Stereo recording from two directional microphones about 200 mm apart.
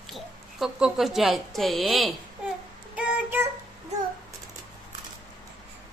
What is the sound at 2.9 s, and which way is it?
Child singing, 5° right (ahead or behind).